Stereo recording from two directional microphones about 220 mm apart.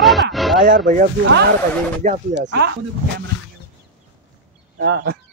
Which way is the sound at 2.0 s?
35° right (ahead or behind).